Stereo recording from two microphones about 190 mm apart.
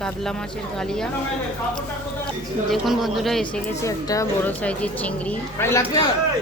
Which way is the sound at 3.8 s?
15° left (ahead or behind).